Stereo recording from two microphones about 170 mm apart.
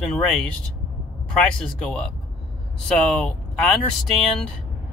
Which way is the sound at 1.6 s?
5° left (ahead or behind).